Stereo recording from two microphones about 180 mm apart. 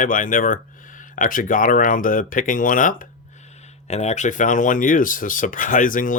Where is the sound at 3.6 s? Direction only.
35° left (ahead or behind).